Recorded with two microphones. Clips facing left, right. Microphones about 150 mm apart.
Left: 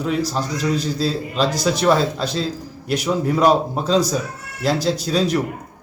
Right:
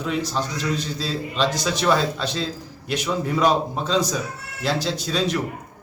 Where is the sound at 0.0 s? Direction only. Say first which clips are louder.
Left 3 dB; 35° left (ahead or behind).